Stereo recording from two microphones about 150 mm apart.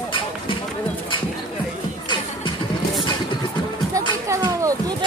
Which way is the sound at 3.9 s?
20° right (ahead or behind).